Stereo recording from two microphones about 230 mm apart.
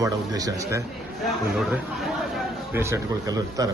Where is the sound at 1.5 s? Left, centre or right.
Centre.